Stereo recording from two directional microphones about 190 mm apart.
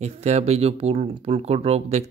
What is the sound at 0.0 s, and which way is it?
Speech, 35° right (ahead or behind).